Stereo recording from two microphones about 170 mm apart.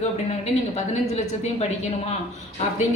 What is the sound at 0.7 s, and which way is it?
Speech, 40° left (ahead or behind).